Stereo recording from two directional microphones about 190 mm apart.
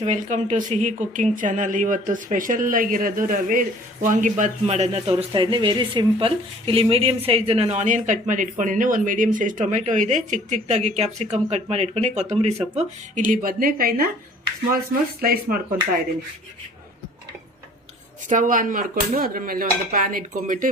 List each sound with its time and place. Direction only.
0.0 s speech: 40° right (ahead or behind)
15.2 s speech: 50° right (ahead or behind)
18.3 s speech: 45° right (ahead or behind)